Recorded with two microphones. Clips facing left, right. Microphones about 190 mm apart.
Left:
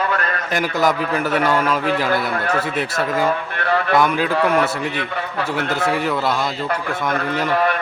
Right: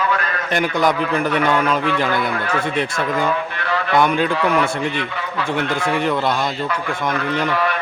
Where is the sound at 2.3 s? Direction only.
40° left (ahead or behind).